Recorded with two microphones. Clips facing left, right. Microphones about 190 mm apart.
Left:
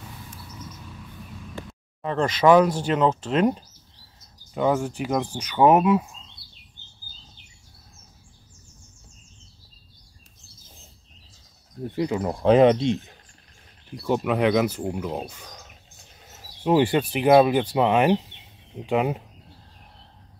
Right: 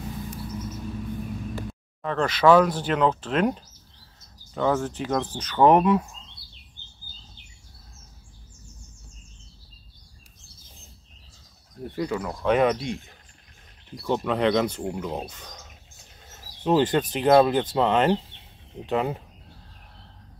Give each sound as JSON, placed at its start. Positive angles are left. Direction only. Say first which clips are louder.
{"t": 2.4, "sound": "speech", "louder": "left 1 dB", "side_deg": 10}
{"t": 4.6, "sound": "speech", "louder": "left 1 dB", "side_deg": 15}
{"t": 11.9, "sound": "speech", "louder": "left 2 dB", "side_deg": 20}
{"t": 12.2, "sound": "speech", "louder": "left 6 dB", "side_deg": 30}
{"t": 14.0, "sound": "speech", "louder": "left 1 dB", "side_deg": 10}
{"t": 16.6, "sound": "speech", "louder": "left 1 dB", "side_deg": 10}